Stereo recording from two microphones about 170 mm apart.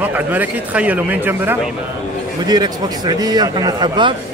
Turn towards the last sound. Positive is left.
turn(degrees=-25)  # may be behind; listen again after turning